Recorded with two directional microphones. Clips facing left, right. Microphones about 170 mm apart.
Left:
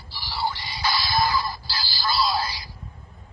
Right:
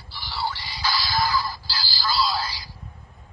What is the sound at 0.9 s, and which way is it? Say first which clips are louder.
Music: left 1 dB; 20° left (ahead or behind).